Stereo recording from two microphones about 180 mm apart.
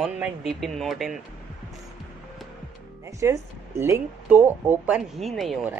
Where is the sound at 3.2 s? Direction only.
15° right (ahead or behind).